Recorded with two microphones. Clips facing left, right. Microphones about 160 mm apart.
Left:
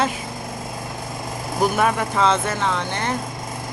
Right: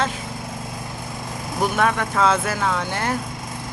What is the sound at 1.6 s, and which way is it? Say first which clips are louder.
Speech: left 1 dB; 5° left (ahead or behind).